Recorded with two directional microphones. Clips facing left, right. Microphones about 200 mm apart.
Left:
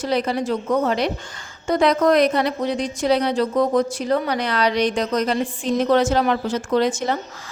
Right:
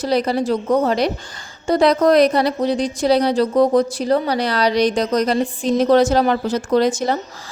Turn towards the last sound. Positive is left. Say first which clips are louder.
# right 3 dB
turn(degrees=-35)  # may be behind; listen again after turning